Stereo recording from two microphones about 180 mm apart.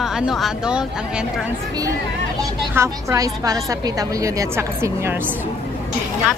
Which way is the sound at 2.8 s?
15° right (ahead or behind).